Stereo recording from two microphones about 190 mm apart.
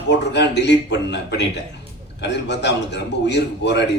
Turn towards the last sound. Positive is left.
turn(degrees=65)  # may be behind; listen again after turning